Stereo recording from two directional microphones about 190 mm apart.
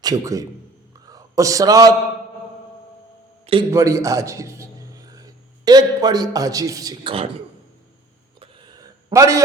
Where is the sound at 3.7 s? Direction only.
15° right (ahead or behind).